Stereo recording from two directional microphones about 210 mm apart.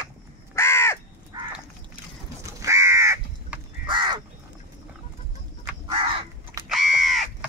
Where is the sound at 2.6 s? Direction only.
15° right (ahead or behind).